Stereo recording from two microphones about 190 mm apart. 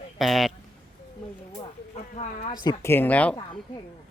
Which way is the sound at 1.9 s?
35° left (ahead or behind).